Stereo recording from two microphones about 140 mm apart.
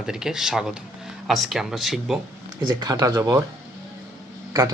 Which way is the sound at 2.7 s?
25° right (ahead or behind).